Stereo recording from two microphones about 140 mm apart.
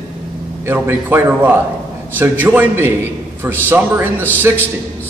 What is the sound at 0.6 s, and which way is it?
A man's voice, 15° right (ahead or behind).